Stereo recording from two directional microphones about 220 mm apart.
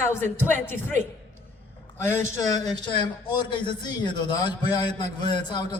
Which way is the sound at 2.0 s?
15° left (ahead or behind).